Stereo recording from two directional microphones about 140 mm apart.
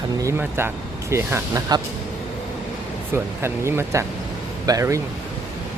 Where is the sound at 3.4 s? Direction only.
20° right (ahead or behind).